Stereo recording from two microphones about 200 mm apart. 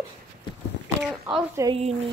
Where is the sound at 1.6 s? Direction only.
15° right (ahead or behind).